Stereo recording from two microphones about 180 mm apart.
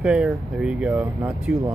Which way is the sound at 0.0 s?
5° right (ahead or behind).